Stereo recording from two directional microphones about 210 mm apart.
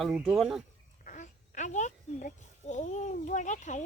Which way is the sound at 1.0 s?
35° left (ahead or behind).